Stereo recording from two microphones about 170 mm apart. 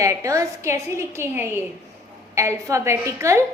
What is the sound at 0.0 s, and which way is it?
A woman's voice, 20° right (ahead or behind).